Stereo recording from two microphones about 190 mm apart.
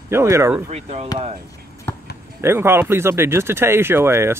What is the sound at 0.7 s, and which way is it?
Speech, 35° right (ahead or behind).